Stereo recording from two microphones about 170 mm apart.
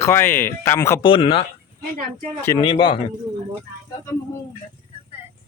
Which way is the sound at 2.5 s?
30° left (ahead or behind).